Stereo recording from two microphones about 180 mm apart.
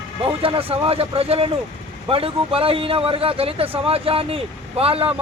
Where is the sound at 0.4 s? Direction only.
30° right (ahead or behind).